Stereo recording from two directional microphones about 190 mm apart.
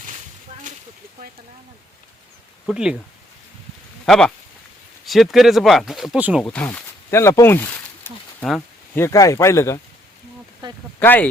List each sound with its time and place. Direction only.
2.6 s speech: 5° right (ahead or behind)
4.0 s speech: 5° left (ahead or behind)
6.4 s snake: 10° left (ahead or behind)
9.0 s speech: 15° left (ahead or behind)
11.0 s speech: 10° left (ahead or behind)